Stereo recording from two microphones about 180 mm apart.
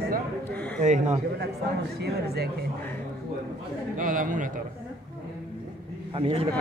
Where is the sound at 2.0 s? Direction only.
65° right (ahead or behind).